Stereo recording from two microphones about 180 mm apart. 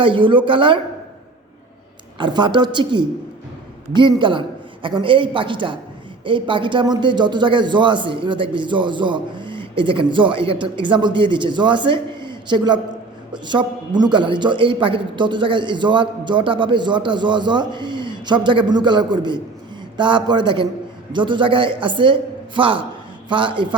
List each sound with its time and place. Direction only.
0.0 s a man's voice: 25° right (ahead or behind)
2.1 s a man's voice: 25° right (ahead or behind)